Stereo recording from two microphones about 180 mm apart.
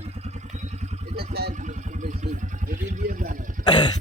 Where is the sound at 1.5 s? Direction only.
40° right (ahead or behind).